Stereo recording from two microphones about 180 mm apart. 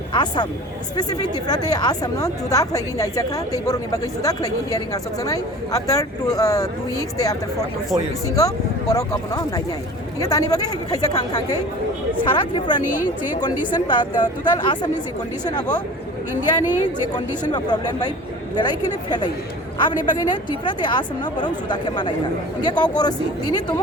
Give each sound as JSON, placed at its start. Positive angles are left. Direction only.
{"t": 0.1, "sound": "speech", "side_deg": 25}
{"t": 8.4, "sound": "speech", "side_deg": 20}
{"t": 12.8, "sound": "speech", "side_deg": 45}
{"t": 13.7, "sound": "speech", "side_deg": 25}
{"t": 17.2, "sound": "speech", "side_deg": 25}